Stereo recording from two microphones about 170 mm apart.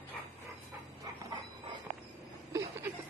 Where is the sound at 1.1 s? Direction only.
20° right (ahead or behind).